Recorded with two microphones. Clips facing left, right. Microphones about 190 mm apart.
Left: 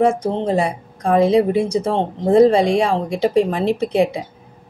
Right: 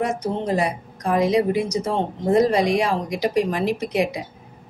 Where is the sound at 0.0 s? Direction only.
30° left (ahead or behind).